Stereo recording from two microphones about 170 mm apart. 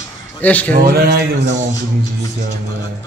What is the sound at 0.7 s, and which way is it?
Speech, 60° right (ahead or behind).